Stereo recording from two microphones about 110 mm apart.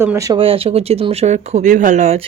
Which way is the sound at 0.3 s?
60° right (ahead or behind).